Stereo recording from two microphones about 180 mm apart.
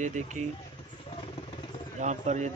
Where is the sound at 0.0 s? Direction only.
40° right (ahead or behind).